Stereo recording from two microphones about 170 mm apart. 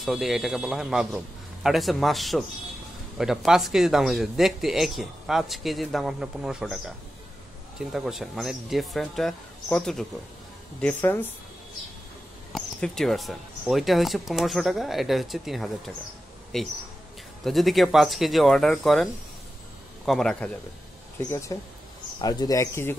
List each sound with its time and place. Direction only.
0.0 s a man's voice: centre (ahead or behind)
7.8 s a man's voice: centre (ahead or behind)
12.5 s a man's voice: centre (ahead or behind)
20.1 s a man's voice: 5° left (ahead or behind)
21.3 s speech: 15° left (ahead or behind)